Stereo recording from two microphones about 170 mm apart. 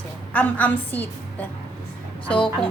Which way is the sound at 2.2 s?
5° left (ahead or behind).